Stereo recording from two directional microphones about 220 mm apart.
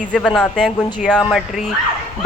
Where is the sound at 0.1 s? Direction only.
5° left (ahead or behind).